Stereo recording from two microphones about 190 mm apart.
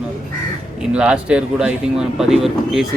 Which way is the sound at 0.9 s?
5° right (ahead or behind).